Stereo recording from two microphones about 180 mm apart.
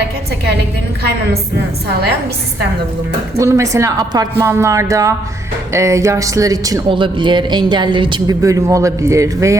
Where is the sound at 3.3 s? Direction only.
15° right (ahead or behind).